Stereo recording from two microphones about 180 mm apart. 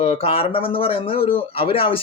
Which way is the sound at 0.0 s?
35° left (ahead or behind).